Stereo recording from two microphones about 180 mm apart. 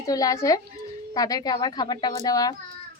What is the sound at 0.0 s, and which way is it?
A woman's voice, 20° left (ahead or behind).